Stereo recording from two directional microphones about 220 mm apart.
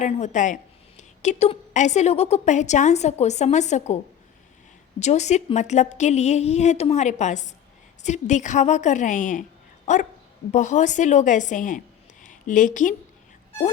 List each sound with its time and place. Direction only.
0.0 s a woman's voice: 35° left (ahead or behind)
4.9 s a woman's voice: 30° left (ahead or behind)